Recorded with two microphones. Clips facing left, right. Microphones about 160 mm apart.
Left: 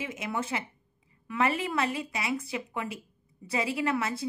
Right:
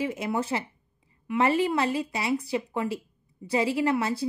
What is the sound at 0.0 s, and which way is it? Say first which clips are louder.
A woman's voice: right 5 dB; 35° right (ahead or behind).